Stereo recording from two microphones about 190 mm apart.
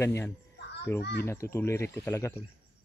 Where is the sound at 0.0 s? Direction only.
15° left (ahead or behind).